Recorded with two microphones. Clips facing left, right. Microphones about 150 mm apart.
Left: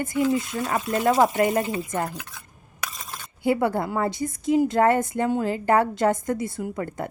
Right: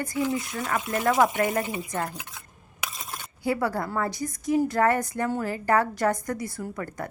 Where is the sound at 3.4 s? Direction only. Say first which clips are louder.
Left 4 dB; 25° left (ahead or behind).